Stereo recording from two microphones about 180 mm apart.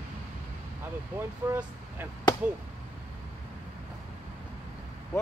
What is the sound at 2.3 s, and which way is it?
Speech, 25° left (ahead or behind).